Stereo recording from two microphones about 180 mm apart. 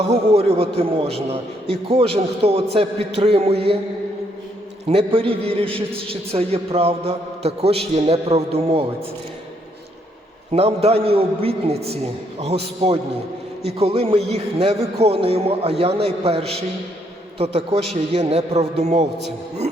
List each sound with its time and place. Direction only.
0.0 s a man's voice: 35° right (ahead or behind)
4.9 s a man's voice: 30° right (ahead or behind)
10.5 s a man's voice: 35° right (ahead or behind)